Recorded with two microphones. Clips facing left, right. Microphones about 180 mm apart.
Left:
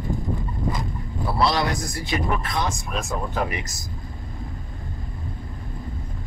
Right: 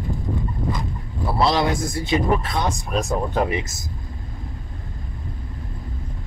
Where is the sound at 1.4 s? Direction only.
25° right (ahead or behind).